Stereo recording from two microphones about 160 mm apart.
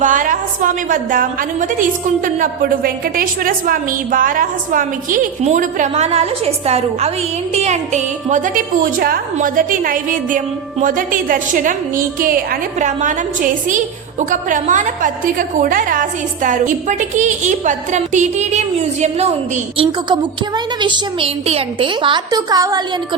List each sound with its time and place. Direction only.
0.0 s a woman's voice: 55° right (ahead or behind)
12.8 s a woman's voice: 50° right (ahead or behind); by 22.8 s 25° right (ahead or behind)